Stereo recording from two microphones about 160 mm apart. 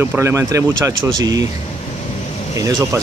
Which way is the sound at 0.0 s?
15° right (ahead or behind).